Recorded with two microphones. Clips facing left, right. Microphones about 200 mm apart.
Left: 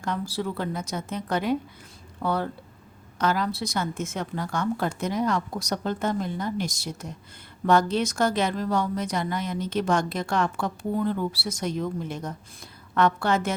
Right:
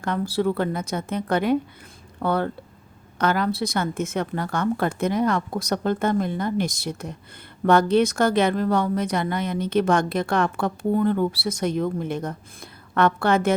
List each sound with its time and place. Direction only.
0.0 s a woman's voice: 55° right (ahead or behind)